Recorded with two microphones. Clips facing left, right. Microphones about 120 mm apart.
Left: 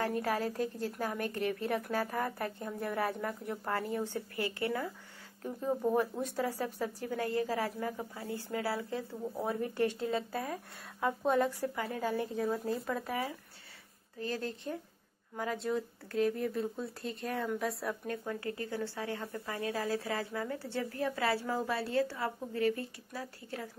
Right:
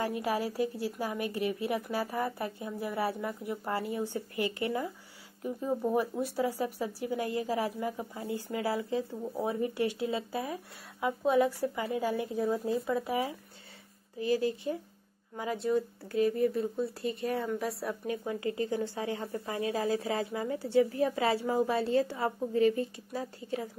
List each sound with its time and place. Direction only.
0.0 s speech: 15° right (ahead or behind)
5.7 s speech: centre (ahead or behind); by 23.7 s 20° right (ahead or behind)